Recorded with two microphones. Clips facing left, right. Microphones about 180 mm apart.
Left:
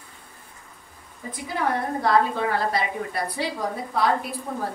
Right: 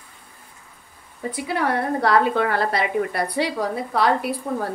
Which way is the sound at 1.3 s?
75° right (ahead or behind).